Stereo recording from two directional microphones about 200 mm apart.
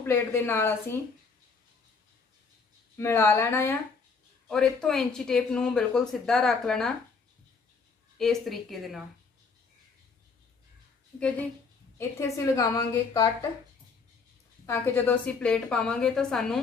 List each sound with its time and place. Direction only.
0.0 s a woman's voice: 10° left (ahead or behind)
3.0 s a woman's voice: 15° left (ahead or behind)
8.2 s speech: centre (ahead or behind)
11.2 s a woman's voice: 5° left (ahead or behind)
14.7 s speech: 10° left (ahead or behind)